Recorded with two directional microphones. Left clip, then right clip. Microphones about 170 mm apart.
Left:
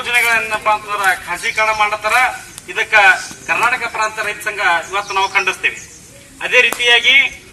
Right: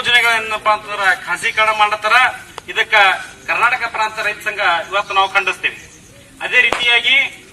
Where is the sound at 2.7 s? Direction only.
5° left (ahead or behind).